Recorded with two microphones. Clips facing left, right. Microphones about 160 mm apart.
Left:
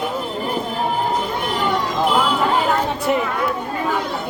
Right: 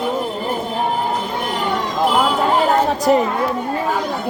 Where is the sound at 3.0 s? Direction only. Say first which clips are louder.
Right 5 dB; 40° right (ahead or behind).